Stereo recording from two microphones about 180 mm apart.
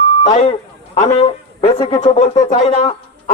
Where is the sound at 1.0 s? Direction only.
35° left (ahead or behind).